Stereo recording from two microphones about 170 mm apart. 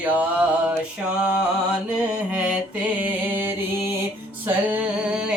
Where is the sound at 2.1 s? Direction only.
5° right (ahead or behind).